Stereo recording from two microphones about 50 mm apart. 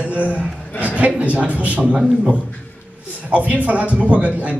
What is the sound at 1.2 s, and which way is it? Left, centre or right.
Speech, right.